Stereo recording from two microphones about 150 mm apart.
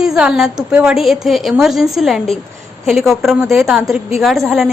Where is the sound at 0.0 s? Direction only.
5° right (ahead or behind).